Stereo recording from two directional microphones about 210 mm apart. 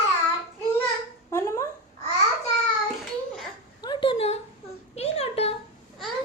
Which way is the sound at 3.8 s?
25° left (ahead or behind).